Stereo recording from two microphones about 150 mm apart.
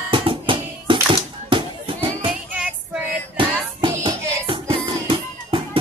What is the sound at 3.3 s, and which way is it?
Music, 35° right (ahead or behind).